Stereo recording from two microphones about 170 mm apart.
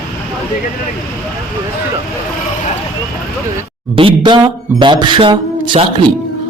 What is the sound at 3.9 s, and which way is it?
A man's voice, 30° right (ahead or behind).